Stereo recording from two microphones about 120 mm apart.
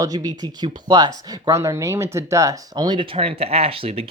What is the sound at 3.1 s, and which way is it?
Speech, 55° right (ahead or behind).